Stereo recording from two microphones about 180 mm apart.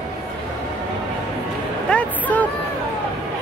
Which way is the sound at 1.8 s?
10° left (ahead or behind).